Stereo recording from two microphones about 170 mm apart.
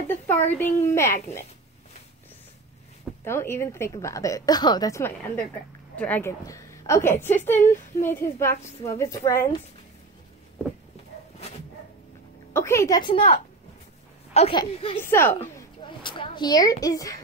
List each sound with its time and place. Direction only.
0.1 s a woman's voice: 10° left (ahead or behind)
3.3 s a woman's voice: 15° left (ahead or behind)
12.5 s a woman's voice: 15° left (ahead or behind); by 15.0 s 30° left (ahead or behind)
15.0 s a woman's voice: 10° left (ahead or behind)
15.8 s a sound: 30° left (ahead or behind)